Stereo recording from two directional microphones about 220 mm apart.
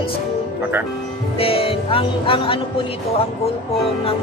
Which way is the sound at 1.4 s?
25° left (ahead or behind).